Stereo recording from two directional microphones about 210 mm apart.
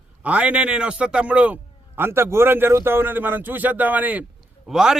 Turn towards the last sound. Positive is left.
turn(degrees=-5)  # may be behind; listen again after turning